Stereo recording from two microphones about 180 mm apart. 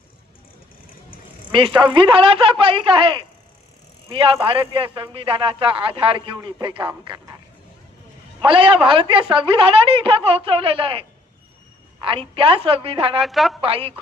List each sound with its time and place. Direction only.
1.8 s a man's voice: 25° right (ahead or behind)
8.4 s a man's voice: 30° right (ahead or behind)
12.3 s a woman's voice: 30° right (ahead or behind)
13.2 s a woman's voice: centre (ahead or behind)
13.6 s a woman's voice: 30° right (ahead or behind)